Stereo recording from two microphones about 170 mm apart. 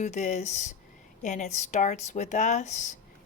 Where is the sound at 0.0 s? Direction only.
45° left (ahead or behind).